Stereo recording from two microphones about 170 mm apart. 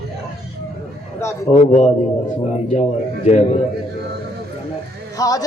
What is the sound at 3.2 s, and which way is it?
Speech, 40° left (ahead or behind).